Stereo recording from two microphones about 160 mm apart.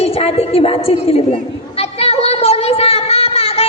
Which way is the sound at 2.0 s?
40° left (ahead or behind).